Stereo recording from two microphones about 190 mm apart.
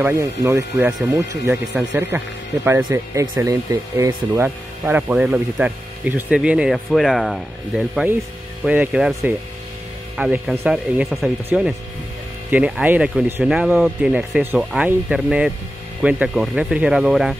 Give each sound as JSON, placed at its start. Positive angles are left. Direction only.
{"t": 0.0, "sound": "speech", "side_deg": -15}
{"t": 1.5, "sound": "speech", "side_deg": -5}